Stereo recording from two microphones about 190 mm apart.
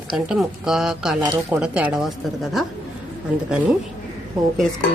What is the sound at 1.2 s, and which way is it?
Speech, 20° right (ahead or behind).